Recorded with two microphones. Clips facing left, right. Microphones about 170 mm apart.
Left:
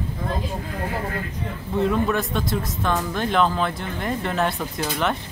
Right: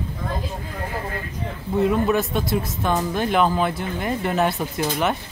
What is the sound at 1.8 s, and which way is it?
Speech, 5° right (ahead or behind).